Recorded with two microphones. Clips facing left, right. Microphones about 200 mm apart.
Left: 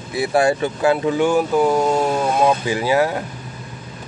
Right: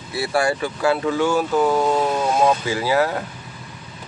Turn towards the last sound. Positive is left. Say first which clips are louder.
# left 2 dB
turn(degrees=15)  # may be behind; listen again after turning